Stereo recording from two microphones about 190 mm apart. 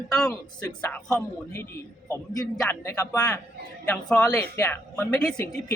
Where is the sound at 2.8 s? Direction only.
15° left (ahead or behind).